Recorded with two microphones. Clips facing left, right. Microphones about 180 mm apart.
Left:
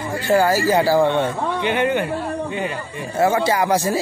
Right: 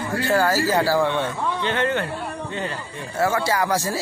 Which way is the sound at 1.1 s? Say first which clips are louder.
Left 4 dB; 35° left (ahead or behind).